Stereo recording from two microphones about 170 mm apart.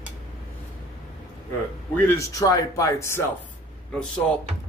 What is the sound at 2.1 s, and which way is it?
Speech, 20° left (ahead or behind).